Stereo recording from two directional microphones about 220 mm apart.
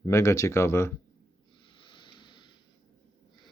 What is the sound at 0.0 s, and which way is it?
Speech, 15° left (ahead or behind).